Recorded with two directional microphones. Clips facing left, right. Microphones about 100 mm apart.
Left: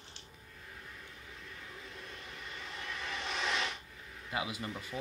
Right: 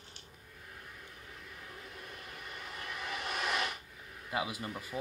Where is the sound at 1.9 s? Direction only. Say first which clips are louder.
Even; 10° right (ahead or behind).